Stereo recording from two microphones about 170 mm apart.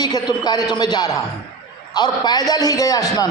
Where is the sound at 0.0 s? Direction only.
25° left (ahead or behind).